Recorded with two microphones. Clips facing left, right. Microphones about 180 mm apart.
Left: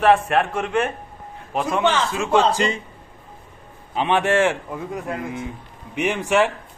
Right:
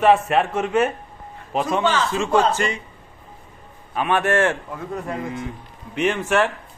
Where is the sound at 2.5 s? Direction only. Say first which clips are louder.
Left 2 dB; 20° left (ahead or behind).